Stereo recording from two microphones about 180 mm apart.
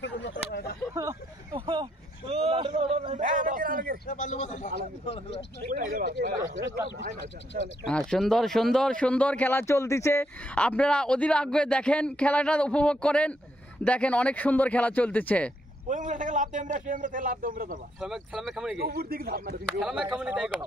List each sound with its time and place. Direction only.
0.5 s a sound: 60° left (ahead or behind)
0.9 s a sound: 25° right (ahead or behind); by 4.0 s 50° right (ahead or behind)
4.1 s speech: 45° left (ahead or behind)
5.7 s a man's voice: 55° right (ahead or behind)
7.8 s speech: 5° left (ahead or behind)
15.9 s a man's voice: 45° right (ahead or behind)
18.0 s speech: centre (ahead or behind)
18.8 s speech: 55° right (ahead or behind)
19.8 s speech: centre (ahead or behind)